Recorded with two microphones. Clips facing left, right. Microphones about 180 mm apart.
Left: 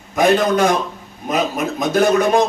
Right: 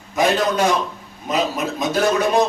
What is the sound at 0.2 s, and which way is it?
A man's voice, 50° left (ahead or behind).